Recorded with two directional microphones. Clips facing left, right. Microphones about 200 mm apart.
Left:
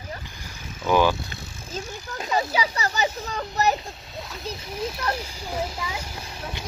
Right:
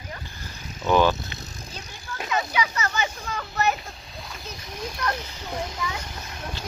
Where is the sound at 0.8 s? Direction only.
10° left (ahead or behind).